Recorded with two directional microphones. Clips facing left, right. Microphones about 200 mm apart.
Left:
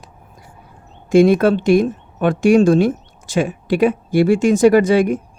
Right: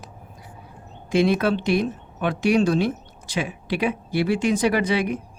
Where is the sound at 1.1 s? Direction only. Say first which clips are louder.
Left 8 dB; 45° left (ahead or behind).